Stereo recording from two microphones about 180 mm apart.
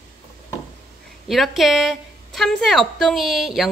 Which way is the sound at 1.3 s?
Centre (ahead or behind).